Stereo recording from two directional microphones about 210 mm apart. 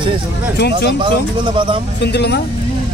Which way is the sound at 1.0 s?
25° right (ahead or behind).